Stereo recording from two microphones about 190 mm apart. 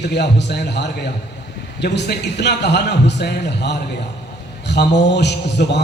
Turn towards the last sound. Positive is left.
turn(degrees=65)  # may be behind; listen again after turning